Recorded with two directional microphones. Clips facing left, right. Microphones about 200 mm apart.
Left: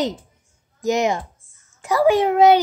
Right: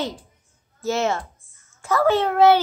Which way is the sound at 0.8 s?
15° left (ahead or behind).